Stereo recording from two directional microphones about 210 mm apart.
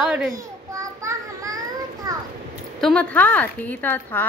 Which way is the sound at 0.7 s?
15° right (ahead or behind).